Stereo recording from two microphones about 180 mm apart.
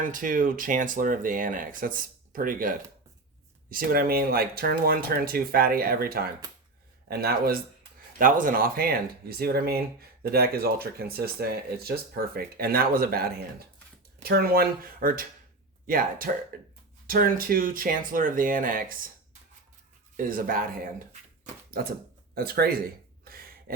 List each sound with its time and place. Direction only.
0.0 s speech: 50° right (ahead or behind)
22.4 s speech: 60° right (ahead or behind)
23.2 s a sound: 55° right (ahead or behind)